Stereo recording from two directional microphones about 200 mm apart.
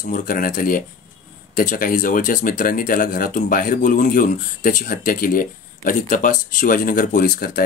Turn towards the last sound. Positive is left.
turn(degrees=45)  # may be behind; listen again after turning